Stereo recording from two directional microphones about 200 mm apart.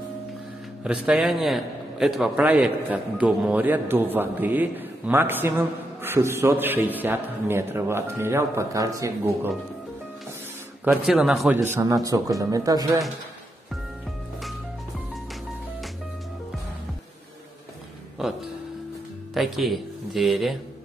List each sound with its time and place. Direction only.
0.8 s a man's voice: 5° right (ahead or behind)
10.8 s a man's voice: 5° right (ahead or behind)
18.2 s music: centre (ahead or behind)
19.3 s speech: centre (ahead or behind)